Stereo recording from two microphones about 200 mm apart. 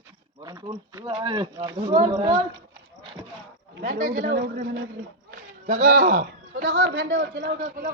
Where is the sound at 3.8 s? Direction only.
40° right (ahead or behind).